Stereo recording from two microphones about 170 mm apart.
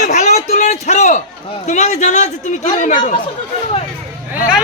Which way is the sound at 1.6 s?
45° left (ahead or behind).